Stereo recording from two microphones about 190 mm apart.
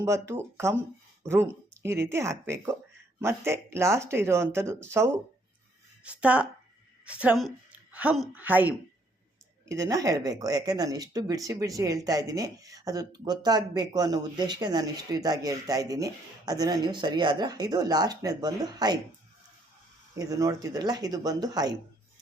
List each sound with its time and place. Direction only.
0.0 s a woman's voice: 15° right (ahead or behind)
20.1 s speech: 15° right (ahead or behind)